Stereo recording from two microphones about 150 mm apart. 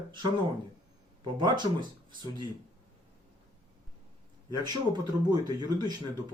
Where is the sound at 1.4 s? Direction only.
30° right (ahead or behind).